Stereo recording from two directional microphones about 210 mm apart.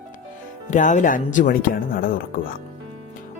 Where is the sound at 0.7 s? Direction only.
35° left (ahead or behind).